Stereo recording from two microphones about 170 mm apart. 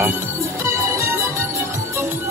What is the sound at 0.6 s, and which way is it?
Music, 15° right (ahead or behind).